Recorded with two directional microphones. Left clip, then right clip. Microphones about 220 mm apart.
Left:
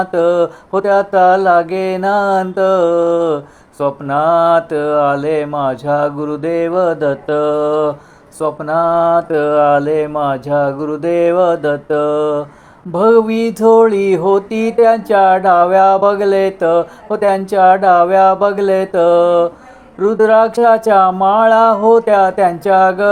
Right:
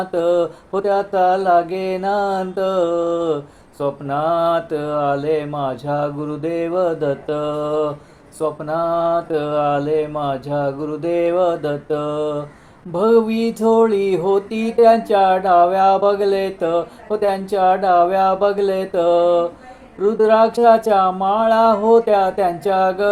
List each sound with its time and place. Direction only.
0.0 s music: 20° left (ahead or behind)